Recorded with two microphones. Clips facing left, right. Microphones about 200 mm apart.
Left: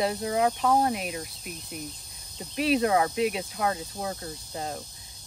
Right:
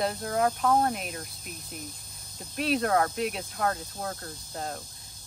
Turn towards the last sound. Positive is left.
turn(degrees=5)  # may be behind; listen again after turning